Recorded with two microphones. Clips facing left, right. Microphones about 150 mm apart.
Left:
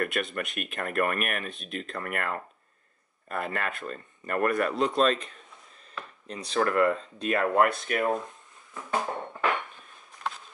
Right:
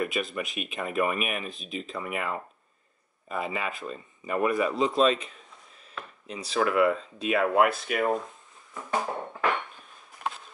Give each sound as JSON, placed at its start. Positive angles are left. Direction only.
{"t": 0.0, "sound": "speech", "side_deg": 0}